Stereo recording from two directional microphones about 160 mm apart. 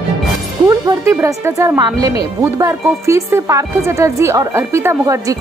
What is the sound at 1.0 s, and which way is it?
A woman's voice, 20° right (ahead or behind).